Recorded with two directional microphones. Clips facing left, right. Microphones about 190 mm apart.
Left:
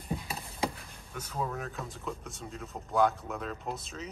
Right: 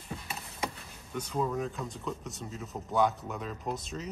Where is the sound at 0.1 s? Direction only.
30° left (ahead or behind).